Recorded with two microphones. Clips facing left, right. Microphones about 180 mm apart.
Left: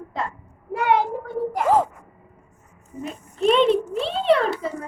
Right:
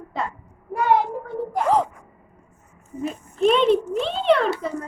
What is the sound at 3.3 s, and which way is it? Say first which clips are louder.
A child's voice: even; centre (ahead or behind).